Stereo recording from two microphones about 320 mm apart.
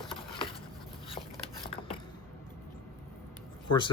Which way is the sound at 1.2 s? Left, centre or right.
Centre.